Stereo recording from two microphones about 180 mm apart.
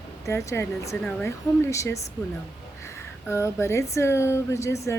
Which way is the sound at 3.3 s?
15° left (ahead or behind).